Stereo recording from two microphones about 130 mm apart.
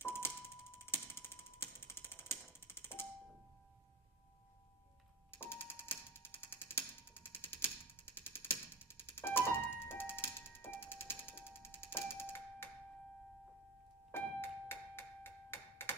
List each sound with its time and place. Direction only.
0.0 s music: 15° left (ahead or behind)
5.3 s a sound: 15° left (ahead or behind)
14.1 s music: 20° left (ahead or behind)